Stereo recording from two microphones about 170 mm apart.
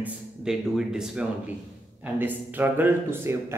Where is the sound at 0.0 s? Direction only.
5° right (ahead or behind).